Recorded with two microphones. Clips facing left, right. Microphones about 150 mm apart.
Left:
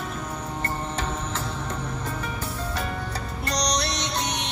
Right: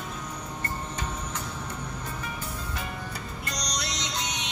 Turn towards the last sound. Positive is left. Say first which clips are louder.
# left 5 dB
turn(degrees=65)  # may be behind; listen again after turning